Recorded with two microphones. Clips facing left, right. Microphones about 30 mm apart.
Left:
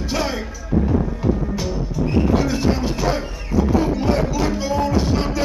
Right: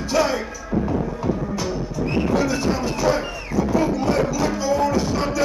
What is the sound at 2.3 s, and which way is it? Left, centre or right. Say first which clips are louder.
Music: left 1 dB; centre.